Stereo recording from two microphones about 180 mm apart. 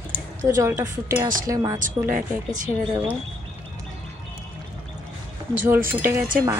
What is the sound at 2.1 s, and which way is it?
Speech, 50° right (ahead or behind).